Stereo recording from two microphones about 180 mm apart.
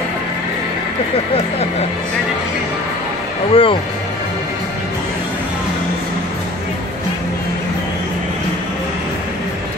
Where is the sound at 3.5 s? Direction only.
30° left (ahead or behind).